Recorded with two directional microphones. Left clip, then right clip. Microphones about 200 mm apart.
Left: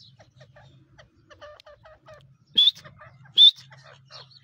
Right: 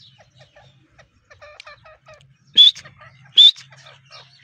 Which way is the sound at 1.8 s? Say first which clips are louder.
Right 4 dB; 25° left (ahead or behind).